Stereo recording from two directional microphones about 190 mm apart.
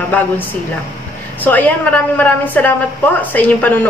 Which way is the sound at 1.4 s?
10° left (ahead or behind).